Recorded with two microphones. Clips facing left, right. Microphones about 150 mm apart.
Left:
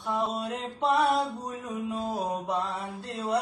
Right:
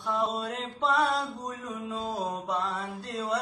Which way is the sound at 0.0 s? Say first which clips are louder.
Even; 15° left (ahead or behind).